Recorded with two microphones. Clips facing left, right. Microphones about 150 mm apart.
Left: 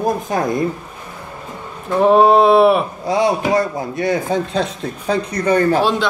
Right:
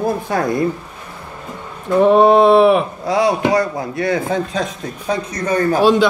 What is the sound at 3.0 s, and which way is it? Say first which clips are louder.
A man's voice: even; 20° left (ahead or behind).